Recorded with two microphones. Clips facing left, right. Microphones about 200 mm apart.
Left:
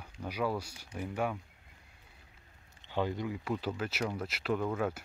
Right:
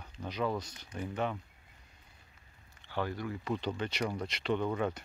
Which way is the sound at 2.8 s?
20° left (ahead or behind).